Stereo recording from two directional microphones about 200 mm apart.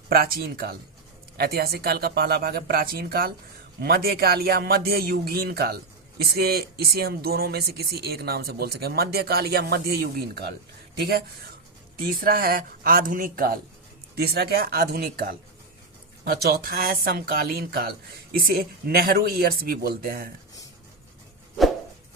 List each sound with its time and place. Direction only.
0.1 s speech: 50° right (ahead or behind)